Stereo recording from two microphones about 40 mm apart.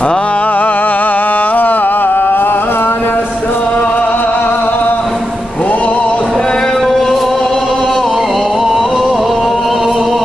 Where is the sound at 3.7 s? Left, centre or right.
Left.